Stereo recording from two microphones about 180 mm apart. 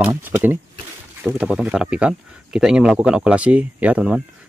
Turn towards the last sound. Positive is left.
turn(degrees=-5)  # may be behind; listen again after turning